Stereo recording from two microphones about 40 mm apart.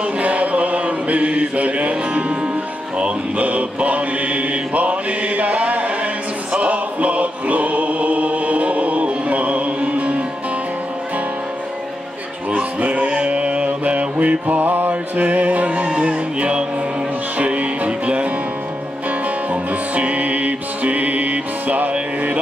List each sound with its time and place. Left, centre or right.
0.0 s chant: right
3.0 s mantra: right
6.5 s music: right
12.4 s music: right
14.6 s music: right
14.9 s mantra: right
16.0 s music: right
19.5 s music: right